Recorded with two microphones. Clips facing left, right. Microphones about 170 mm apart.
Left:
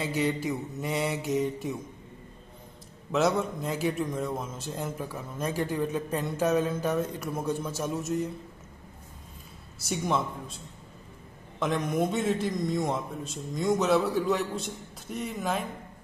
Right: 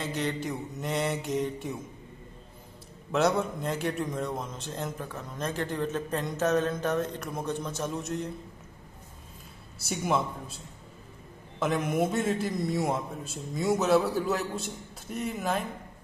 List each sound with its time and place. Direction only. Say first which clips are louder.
0.0 s a man's voice: left 3 dB; 5° left (ahead or behind)
3.1 s a man's voice: even; centre (ahead or behind)
9.8 s a man's voice: even; centre (ahead or behind)
11.6 s a man's voice: even; 5° right (ahead or behind)